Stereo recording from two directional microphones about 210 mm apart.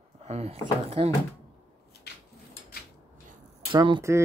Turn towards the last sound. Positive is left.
turn(degrees=-20)  # may be behind; listen again after turning